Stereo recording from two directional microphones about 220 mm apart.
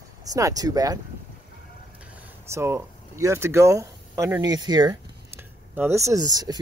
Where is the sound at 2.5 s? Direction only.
10° right (ahead or behind).